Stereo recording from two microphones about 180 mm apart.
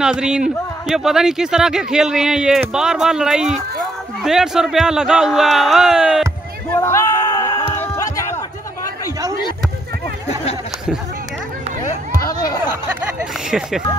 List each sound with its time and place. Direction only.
0.0 s a man's voice: 5° right (ahead or behind)
6.8 s a sound: 15° left (ahead or behind)
7.7 s music: 15° left (ahead or behind)
12.2 s chatter: 20° left (ahead or behind)
13.2 s speech: 5° right (ahead or behind)